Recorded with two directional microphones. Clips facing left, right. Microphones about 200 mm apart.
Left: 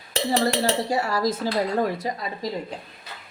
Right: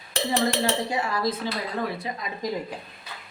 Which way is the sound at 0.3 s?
40° left (ahead or behind).